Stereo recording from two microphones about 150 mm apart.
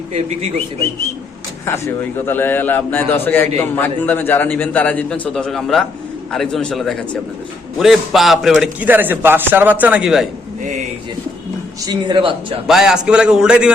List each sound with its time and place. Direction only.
2.2 s a man's voice: 15° left (ahead or behind); by 10.2 s 5° right (ahead or behind)
10.6 s pigeon: 55° right (ahead or behind)
11.9 s speech: 30° right (ahead or behind)
12.6 s a man's voice: 5° right (ahead or behind)